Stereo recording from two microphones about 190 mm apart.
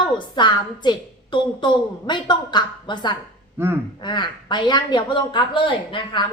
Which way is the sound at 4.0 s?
25° left (ahead or behind).